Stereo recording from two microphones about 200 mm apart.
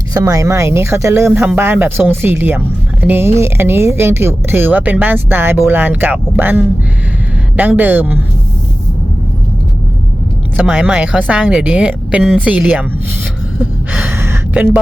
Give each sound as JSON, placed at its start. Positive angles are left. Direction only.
{"t": 0.1, "sound": "speech", "side_deg": -15}
{"t": 10.7, "sound": "speech", "side_deg": -5}
{"t": 13.6, "sound": "gasp", "side_deg": -10}